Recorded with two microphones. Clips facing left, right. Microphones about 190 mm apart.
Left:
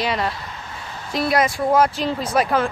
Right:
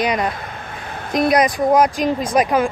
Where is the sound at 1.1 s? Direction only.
20° right (ahead or behind).